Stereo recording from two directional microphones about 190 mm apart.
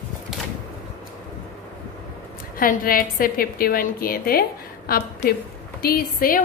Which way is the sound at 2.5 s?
50° left (ahead or behind).